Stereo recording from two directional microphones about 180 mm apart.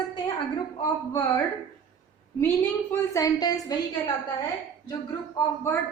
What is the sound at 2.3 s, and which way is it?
A woman's voice, 10° left (ahead or behind).